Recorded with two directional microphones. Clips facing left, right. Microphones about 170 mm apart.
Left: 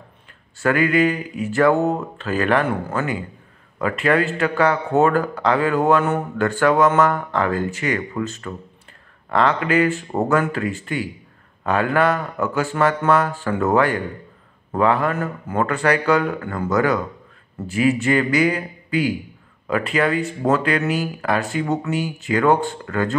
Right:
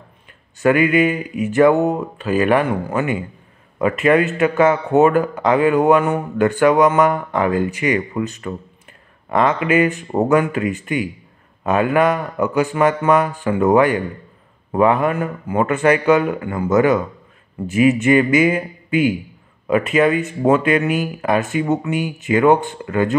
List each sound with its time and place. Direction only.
0.6 s speech: 20° right (ahead or behind)